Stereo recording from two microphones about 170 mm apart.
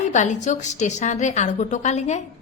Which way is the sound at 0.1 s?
45° left (ahead or behind).